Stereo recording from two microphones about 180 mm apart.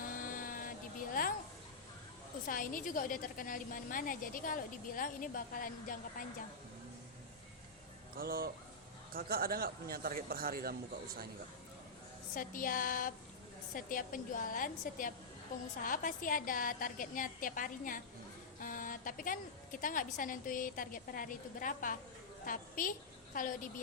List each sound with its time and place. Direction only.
0.1 s a sound: 50° left (ahead or behind)
2.5 s a woman's voice: 50° left (ahead or behind)
8.2 s speech: 55° right (ahead or behind)
12.3 s a woman's voice: 50° left (ahead or behind)